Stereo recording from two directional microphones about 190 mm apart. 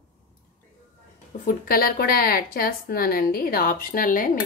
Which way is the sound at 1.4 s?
50° left (ahead or behind).